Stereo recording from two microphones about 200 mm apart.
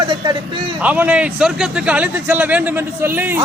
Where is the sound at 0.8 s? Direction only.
5° right (ahead or behind).